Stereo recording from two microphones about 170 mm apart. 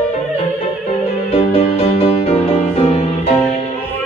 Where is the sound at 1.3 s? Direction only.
35° left (ahead or behind).